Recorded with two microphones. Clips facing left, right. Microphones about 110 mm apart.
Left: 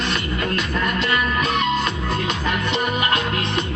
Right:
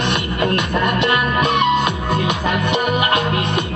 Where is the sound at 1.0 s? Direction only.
60° right (ahead or behind).